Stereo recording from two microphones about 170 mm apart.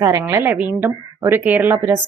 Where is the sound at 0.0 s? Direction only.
20° right (ahead or behind).